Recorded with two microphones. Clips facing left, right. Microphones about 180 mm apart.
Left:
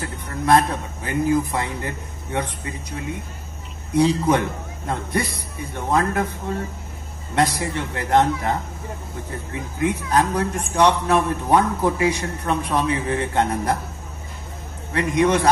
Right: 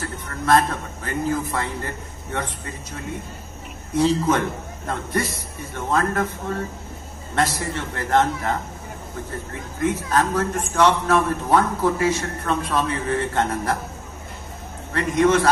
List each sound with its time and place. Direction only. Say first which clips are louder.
0.0 s a man's voice: left 2 dB; 15° left (ahead or behind)
7.3 s a man's voice: left 2 dB; 15° left (ahead or behind)
14.9 s a man's voice: even; 15° left (ahead or behind)